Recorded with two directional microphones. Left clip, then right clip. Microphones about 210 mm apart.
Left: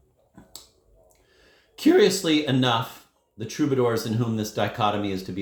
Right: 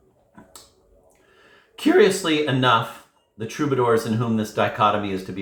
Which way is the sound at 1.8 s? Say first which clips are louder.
Right 2 dB; 40° left (ahead or behind).